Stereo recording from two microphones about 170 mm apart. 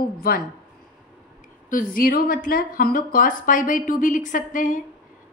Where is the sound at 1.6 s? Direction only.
55° left (ahead or behind).